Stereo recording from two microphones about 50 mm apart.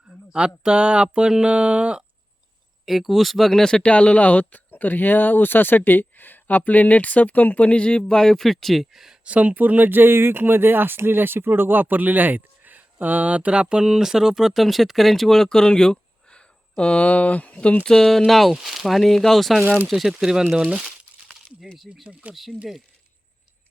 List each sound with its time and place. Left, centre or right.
0.3 s speech: centre
2.8 s speech: centre
3.6 s speech: centre
9.2 s speech: right; by 17.8 s left
17.8 s speech: centre
21.8 s speech: centre